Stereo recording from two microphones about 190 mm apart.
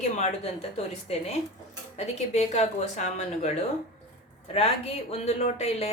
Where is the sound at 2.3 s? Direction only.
35° left (ahead or behind).